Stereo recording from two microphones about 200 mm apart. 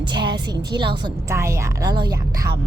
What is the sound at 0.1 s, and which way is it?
A woman's voice, 20° right (ahead or behind).